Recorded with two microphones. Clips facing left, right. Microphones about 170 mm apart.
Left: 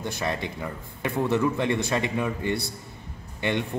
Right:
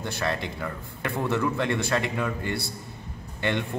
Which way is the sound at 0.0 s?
15° left (ahead or behind).